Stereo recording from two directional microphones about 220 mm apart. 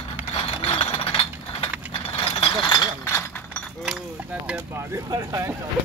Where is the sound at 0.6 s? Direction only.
25° left (ahead or behind).